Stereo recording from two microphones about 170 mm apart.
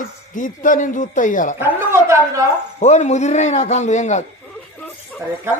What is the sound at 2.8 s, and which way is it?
Speech, 45° left (ahead or behind).